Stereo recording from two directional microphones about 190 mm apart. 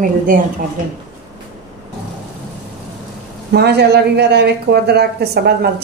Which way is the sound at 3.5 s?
60° right (ahead or behind).